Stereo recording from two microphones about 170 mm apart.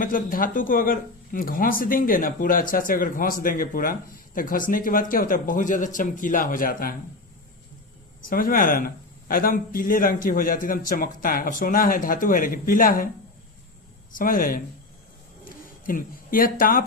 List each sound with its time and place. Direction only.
0.0 s speech: 55° left (ahead or behind)
8.3 s speech: 55° left (ahead or behind)
14.2 s speech: 55° left (ahead or behind)
15.9 s speech: 55° left (ahead or behind)